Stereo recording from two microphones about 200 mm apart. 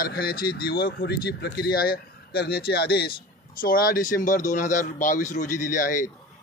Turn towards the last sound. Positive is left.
turn(degrees=40)  # may be behind; listen again after turning